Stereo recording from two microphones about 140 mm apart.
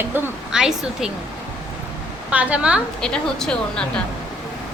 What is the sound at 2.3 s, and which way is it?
Speech, 10° right (ahead or behind).